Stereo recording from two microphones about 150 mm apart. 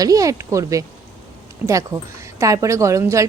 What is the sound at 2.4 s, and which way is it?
Speech, 20° right (ahead or behind).